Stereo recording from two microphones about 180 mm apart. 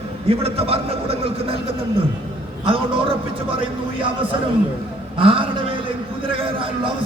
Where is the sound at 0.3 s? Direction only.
35° right (ahead or behind).